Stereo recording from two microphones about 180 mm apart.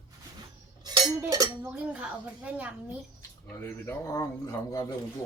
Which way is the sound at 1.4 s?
10° right (ahead or behind).